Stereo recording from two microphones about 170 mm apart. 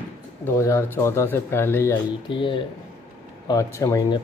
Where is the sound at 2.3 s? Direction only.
30° left (ahead or behind).